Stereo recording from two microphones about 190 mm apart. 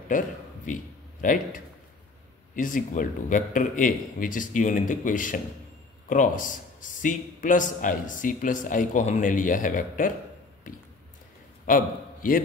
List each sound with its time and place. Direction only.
0.1 s a man's voice: 45° left (ahead or behind)
11.6 s a man's voice: 45° left (ahead or behind)